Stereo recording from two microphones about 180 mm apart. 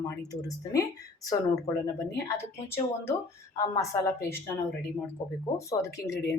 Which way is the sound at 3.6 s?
20° left (ahead or behind).